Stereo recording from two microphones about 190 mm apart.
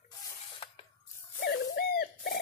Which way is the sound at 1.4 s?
60° left (ahead or behind).